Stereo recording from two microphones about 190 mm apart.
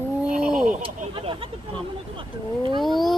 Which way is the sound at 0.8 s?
30° right (ahead or behind).